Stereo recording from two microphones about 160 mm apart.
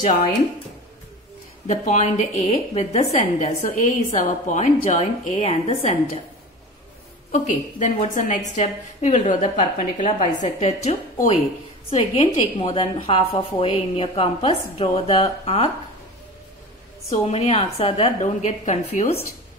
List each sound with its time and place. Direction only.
0.0 s speech: 55° left (ahead or behind)
1.7 s a woman's voice: 50° left (ahead or behind)
7.2 s a woman's voice: 55° left (ahead or behind)
17.1 s a woman's voice: 40° left (ahead or behind)